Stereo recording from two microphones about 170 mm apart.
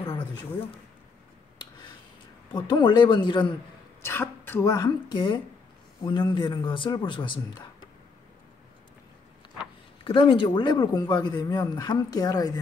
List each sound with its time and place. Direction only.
2.5 s speech: 25° left (ahead or behind)
4.0 s speech: 15° left (ahead or behind)
10.0 s speech: 30° left (ahead or behind)